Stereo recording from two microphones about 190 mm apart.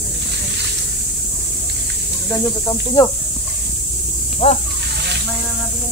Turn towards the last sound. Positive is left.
turn(degrees=35)  # may be behind; listen again after turning